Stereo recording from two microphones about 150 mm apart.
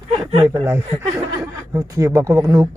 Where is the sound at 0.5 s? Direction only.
15° right (ahead or behind).